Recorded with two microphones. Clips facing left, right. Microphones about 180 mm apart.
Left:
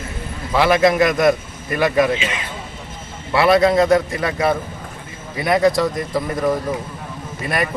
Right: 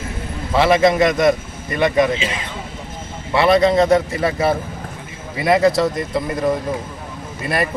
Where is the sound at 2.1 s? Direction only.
35° right (ahead or behind).